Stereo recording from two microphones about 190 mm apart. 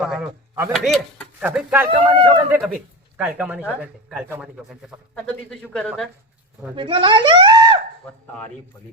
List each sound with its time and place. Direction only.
0.0 s speech: 5° right (ahead or behind)
1.5 s speech: 10° right (ahead or behind)
1.9 s speech: 25° right (ahead or behind)
2.5 s speech: 5° right (ahead or behind)
6.7 s speech: 25° right (ahead or behind)